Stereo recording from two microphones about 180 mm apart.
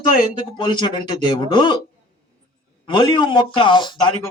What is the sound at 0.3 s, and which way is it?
A man's voice, 25° left (ahead or behind).